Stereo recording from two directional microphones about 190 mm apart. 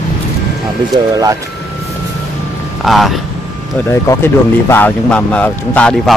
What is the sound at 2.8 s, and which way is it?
Speech, centre (ahead or behind).